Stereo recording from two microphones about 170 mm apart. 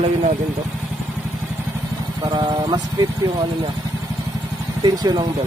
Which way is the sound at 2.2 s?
25° right (ahead or behind).